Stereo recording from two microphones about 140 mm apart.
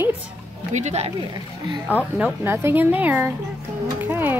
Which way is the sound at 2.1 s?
15° right (ahead or behind).